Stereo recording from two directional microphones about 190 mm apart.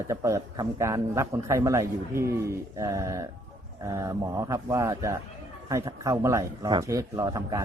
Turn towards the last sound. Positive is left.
turn(degrees=-20)  # may be behind; listen again after turning